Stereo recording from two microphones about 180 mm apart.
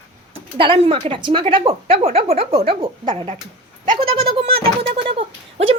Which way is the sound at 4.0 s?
30° right (ahead or behind).